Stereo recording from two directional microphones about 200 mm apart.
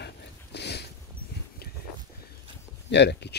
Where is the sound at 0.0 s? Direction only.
55° left (ahead or behind).